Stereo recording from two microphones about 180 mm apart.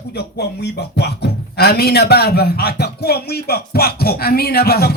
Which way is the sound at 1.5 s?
60° left (ahead or behind).